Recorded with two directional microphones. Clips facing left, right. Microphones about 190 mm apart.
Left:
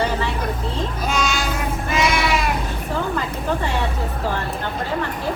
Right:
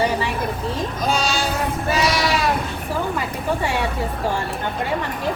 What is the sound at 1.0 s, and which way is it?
Sheep, 35° right (ahead or behind).